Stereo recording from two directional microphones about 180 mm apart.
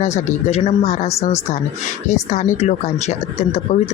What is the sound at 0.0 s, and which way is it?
Speech, 40° left (ahead or behind).